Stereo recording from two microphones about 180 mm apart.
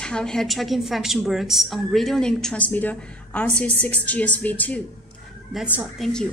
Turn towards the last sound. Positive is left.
turn(degrees=0)  # may be behind; listen again after turning